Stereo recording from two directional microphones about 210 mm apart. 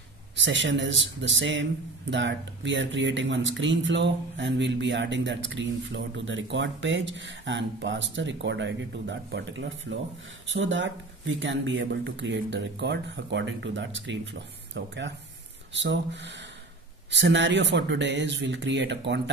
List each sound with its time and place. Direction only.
0.4 s a man's voice: 60° right (ahead or behind)